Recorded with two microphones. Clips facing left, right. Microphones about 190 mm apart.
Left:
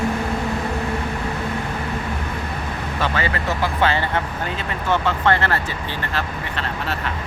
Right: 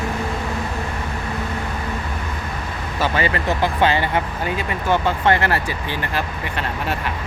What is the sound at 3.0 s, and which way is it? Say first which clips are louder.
Speech: right 3 dB; 15° right (ahead or behind).